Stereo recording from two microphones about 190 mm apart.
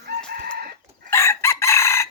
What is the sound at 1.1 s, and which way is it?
Chicken, 15° left (ahead or behind).